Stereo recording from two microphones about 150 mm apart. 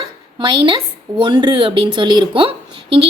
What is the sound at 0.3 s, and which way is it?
A woman's voice, 30° right (ahead or behind).